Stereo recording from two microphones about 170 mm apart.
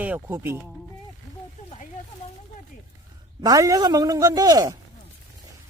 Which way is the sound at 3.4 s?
20° right (ahead or behind).